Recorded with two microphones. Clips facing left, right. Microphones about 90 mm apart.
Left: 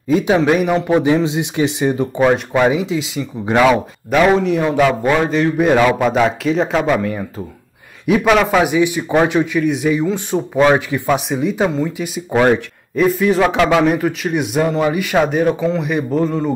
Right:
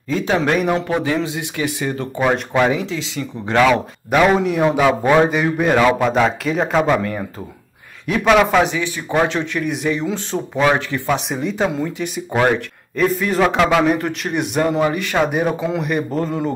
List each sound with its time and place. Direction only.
0.1 s speech: 15° left (ahead or behind)
0.8 s speech: 20° left (ahead or behind)
2.1 s speech: centre (ahead or behind)
2.6 s speech: 15° left (ahead or behind)
4.2 s speech: centre (ahead or behind)
5.6 s speech: 5° left (ahead or behind)
8.7 s speech: 15° left (ahead or behind)
15.2 s speech: 15° right (ahead or behind)
15.8 s speech: centre (ahead or behind)